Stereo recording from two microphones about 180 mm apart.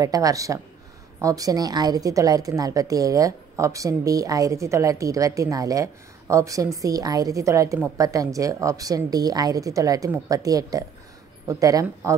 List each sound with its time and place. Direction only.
0.0 s a woman's voice: 20° right (ahead or behind)